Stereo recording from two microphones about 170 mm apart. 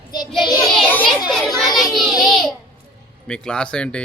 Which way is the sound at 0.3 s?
25° left (ahead or behind).